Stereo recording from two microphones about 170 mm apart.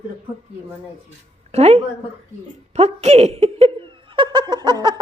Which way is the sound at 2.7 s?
40° right (ahead or behind).